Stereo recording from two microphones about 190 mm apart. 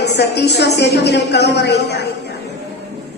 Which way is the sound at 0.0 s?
60° left (ahead or behind).